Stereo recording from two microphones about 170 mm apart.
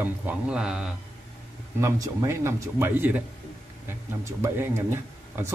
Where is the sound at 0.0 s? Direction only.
10° right (ahead or behind).